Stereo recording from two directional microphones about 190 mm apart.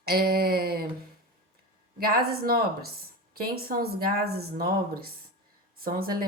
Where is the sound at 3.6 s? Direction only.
50° right (ahead or behind).